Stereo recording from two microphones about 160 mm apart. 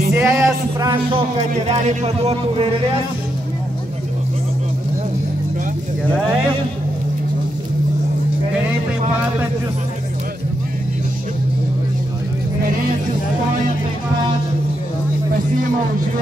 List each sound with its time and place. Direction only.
0.1 s music: 15° right (ahead or behind)
1.7 s speech: 45° right (ahead or behind)